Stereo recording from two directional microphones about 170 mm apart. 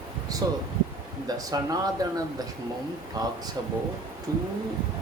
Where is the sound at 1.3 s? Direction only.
20° right (ahead or behind).